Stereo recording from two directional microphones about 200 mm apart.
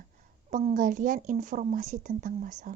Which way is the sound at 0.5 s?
40° right (ahead or behind).